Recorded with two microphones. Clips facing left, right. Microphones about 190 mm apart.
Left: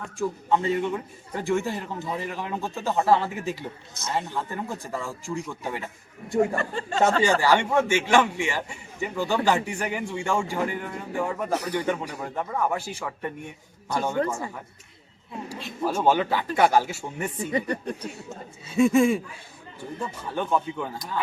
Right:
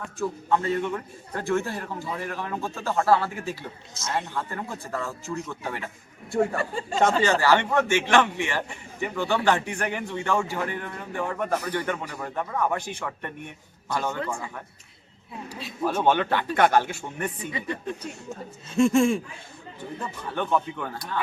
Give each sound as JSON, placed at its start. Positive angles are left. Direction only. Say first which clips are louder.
{"t": 0.2, "sound": "a man's voice", "louder": "left 1 dB", "side_deg": 15}
{"t": 6.6, "sound": "speech", "louder": "even", "side_deg": -5}
{"t": 7.2, "sound": "a man's voice", "louder": "even", "side_deg": 15}
{"t": 15.8, "sound": "a man's voice", "louder": "even", "side_deg": 5}
{"t": 17.5, "sound": "speech", "louder": "left 4 dB", "side_deg": 40}
{"t": 18.7, "sound": "a sound", "louder": "left 1 dB", "side_deg": 5}
{"t": 20.0, "sound": "a man's voice", "louder": "left 1 dB", "side_deg": 10}